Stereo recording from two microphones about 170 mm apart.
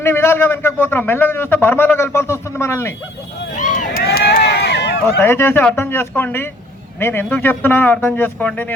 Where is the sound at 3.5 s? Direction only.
45° left (ahead or behind); by 5.0 s 75° left (ahead or behind).